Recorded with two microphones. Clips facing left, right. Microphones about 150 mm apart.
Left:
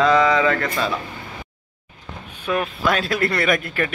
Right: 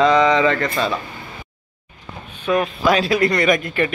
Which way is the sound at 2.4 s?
5° left (ahead or behind).